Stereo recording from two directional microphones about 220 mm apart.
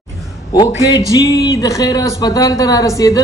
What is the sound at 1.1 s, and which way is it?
A woman's voice, 20° left (ahead or behind).